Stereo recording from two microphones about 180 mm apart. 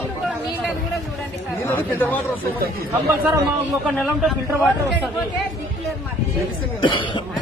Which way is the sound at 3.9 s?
5° left (ahead or behind).